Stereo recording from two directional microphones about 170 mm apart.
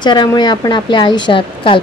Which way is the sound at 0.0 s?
25° left (ahead or behind).